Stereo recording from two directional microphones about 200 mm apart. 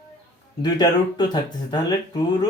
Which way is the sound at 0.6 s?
20° left (ahead or behind).